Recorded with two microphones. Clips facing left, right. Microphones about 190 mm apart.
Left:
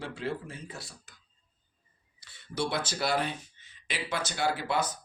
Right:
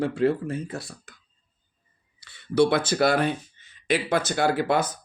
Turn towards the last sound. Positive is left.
turn(degrees=-50)  # may be behind; listen again after turning